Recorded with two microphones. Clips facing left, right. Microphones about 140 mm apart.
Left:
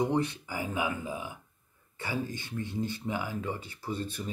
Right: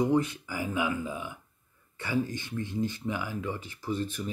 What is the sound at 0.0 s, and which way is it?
Speech, 20° left (ahead or behind).